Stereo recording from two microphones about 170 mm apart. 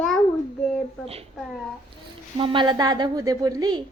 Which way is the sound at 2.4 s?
30° right (ahead or behind).